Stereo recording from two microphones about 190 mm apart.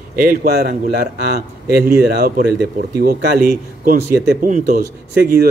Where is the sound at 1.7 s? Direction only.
55° right (ahead or behind).